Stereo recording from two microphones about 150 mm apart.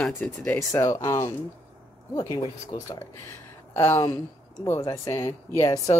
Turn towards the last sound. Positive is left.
turn(degrees=20)  # may be behind; listen again after turning